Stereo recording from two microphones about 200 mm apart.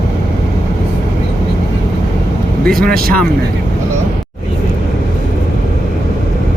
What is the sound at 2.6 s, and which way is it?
Speech, centre (ahead or behind).